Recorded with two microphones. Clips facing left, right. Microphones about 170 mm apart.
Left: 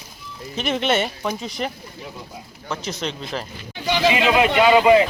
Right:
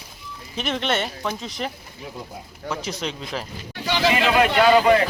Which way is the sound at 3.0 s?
5° right (ahead or behind).